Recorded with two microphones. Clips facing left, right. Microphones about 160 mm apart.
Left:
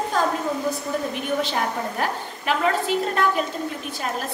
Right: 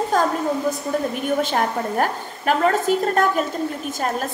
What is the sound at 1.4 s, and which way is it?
A woman's voice, 45° right (ahead or behind).